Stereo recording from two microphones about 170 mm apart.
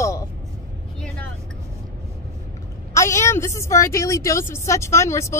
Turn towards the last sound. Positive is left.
turn(degrees=15)  # may be behind; listen again after turning